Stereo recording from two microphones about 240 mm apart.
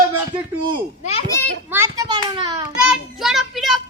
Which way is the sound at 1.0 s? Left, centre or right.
Left.